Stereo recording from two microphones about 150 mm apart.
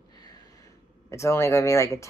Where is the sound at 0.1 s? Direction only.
25° left (ahead or behind).